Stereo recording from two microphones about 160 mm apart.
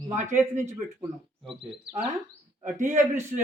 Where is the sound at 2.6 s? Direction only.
15° right (ahead or behind).